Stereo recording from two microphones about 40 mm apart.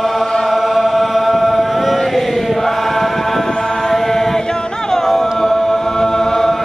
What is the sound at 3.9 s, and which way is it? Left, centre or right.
A capella, centre.